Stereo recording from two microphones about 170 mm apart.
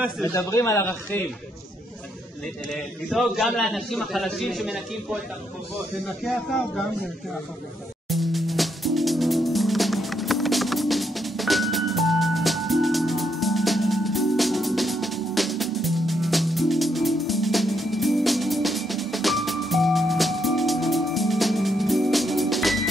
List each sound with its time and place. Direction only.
0.2 s speech: 15° left (ahead or behind)
2.4 s a man's voice: centre (ahead or behind)
6.2 s a man's voice: centre (ahead or behind)
8.1 s music: centre (ahead or behind)